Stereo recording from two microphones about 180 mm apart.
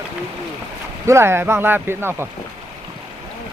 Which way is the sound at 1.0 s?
15° right (ahead or behind).